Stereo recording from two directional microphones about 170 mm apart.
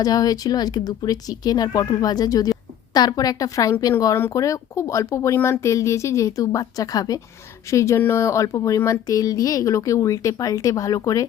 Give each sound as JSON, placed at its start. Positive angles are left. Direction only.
{"t": 0.0, "sound": "speech", "side_deg": 20}